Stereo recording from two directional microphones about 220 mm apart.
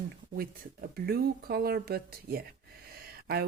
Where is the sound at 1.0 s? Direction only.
45° right (ahead or behind).